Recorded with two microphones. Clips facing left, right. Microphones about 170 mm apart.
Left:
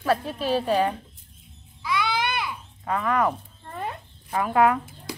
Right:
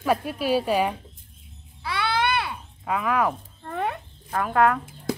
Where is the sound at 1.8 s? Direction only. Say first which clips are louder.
Even; 65° right (ahead or behind).